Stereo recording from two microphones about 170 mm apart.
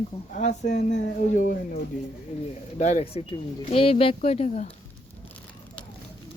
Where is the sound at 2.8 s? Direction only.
45° left (ahead or behind).